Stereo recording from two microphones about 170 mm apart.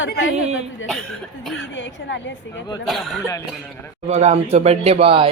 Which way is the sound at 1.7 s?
90° left.